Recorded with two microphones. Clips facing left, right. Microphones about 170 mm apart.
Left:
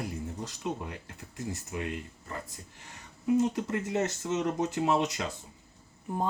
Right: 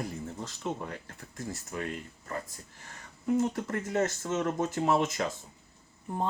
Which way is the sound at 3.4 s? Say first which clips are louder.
Left 2 dB; 15° left (ahead or behind).